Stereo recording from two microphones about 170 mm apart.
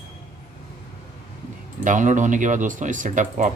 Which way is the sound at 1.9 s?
50° right (ahead or behind).